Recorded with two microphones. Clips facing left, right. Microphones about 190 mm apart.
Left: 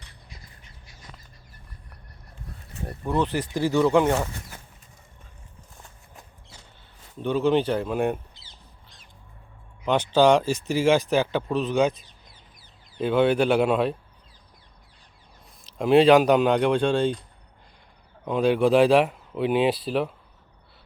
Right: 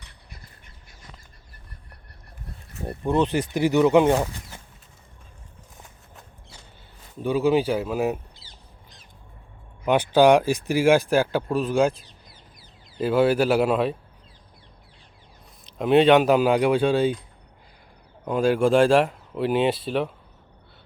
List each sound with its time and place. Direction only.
0.3 s duck: 55° right (ahead or behind)
2.8 s speech: 25° right (ahead or behind)
7.2 s speech: 10° right (ahead or behind)
9.8 s speech: 10° right (ahead or behind)
13.0 s speech: 5° right (ahead or behind)
15.6 s speech: centre (ahead or behind)
18.3 s speech: centre (ahead or behind)